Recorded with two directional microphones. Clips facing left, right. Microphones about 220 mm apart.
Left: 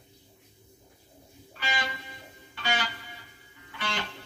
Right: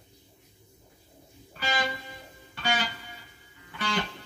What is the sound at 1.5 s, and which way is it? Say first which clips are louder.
Music: right 3 dB; 45° right (ahead or behind).